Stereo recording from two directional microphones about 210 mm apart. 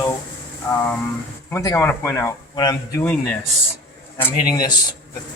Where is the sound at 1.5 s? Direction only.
10° left (ahead or behind).